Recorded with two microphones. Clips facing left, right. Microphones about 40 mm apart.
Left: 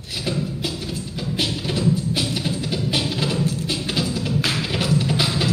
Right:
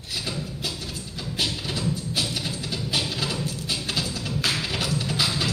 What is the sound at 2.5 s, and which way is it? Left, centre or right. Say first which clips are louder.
Music: left 6 dB; centre.